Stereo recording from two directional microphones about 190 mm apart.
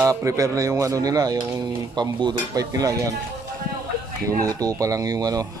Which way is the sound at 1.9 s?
20° right (ahead or behind).